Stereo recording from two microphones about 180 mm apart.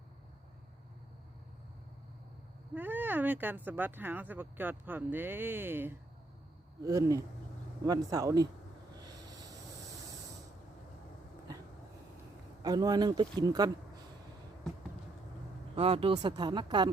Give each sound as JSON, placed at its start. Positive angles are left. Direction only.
{"t": 2.7, "sound": "speech", "side_deg": -10}
{"t": 9.0, "sound": "a sound", "side_deg": -20}
{"t": 12.6, "sound": "speech", "side_deg": -20}
{"t": 15.7, "sound": "speech", "side_deg": -30}